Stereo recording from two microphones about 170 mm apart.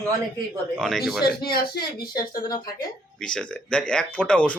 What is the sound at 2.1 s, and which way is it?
Speech, 25° left (ahead or behind).